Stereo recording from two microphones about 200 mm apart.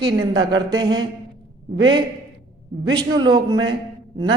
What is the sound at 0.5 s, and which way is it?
Speech, 20° right (ahead or behind).